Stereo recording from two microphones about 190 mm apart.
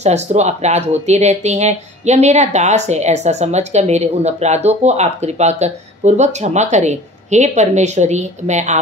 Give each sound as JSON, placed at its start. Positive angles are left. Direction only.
{"t": 0.0, "sound": "speech", "side_deg": -35}